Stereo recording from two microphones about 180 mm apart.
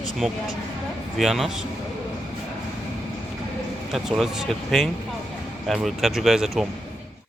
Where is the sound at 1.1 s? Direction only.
Centre (ahead or behind).